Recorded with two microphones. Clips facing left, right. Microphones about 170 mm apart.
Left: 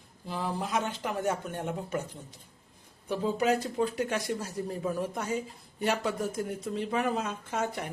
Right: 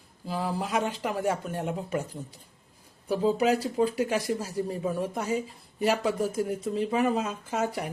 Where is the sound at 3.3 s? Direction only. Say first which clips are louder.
Right 3 dB; 5° right (ahead or behind).